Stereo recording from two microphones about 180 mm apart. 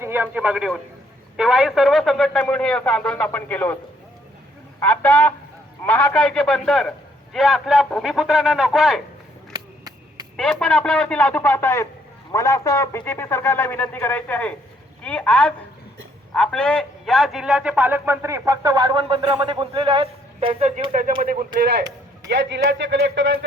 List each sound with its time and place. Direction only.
0.0 s a man's voice: 10° right (ahead or behind); by 3.8 s 10° left (ahead or behind)
4.8 s speech: 10° left (ahead or behind)
9.5 s a sound: 20° right (ahead or behind)
10.3 s a man's voice: 5° left (ahead or behind); by 20.8 s 40° right (ahead or behind)
21.2 s speech: 50° right (ahead or behind)
22.3 s a man's voice: 75° right (ahead or behind); by 23.4 s 90° right